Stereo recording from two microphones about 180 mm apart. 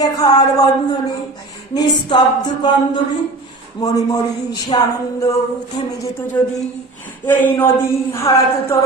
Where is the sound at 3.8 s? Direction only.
20° left (ahead or behind).